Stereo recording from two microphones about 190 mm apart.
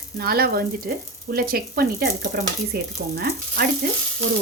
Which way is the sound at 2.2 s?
60° right (ahead or behind).